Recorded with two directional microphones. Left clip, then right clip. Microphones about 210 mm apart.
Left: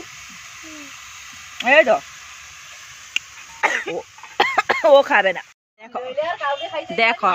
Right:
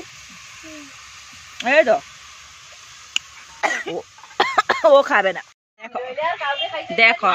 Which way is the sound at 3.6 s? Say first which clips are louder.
Left 2 dB; 45° right (ahead or behind).